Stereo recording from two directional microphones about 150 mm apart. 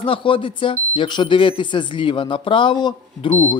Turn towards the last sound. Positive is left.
turn(degrees=50)  # may be behind; listen again after turning